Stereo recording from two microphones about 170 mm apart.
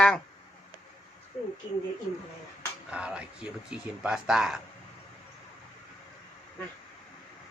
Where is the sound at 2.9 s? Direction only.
5° right (ahead or behind).